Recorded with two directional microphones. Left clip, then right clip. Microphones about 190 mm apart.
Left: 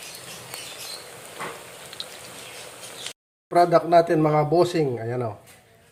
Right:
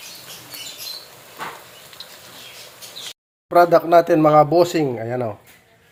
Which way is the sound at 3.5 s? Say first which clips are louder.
Right 4 dB; 25° right (ahead or behind).